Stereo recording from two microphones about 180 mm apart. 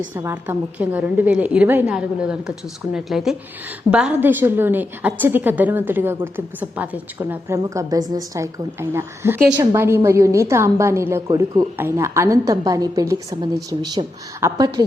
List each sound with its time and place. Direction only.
0.1 s a woman's voice: 10° right (ahead or behind)